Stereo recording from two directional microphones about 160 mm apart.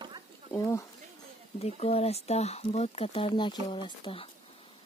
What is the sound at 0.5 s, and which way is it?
Speech, 20° left (ahead or behind).